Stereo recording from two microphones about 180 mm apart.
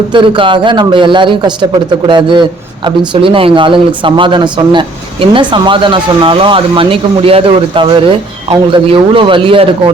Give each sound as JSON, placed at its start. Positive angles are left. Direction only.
{"t": 0.1, "sound": "speech", "side_deg": -25}